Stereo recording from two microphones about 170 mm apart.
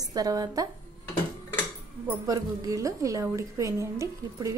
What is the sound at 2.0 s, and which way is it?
Speech, 15° right (ahead or behind).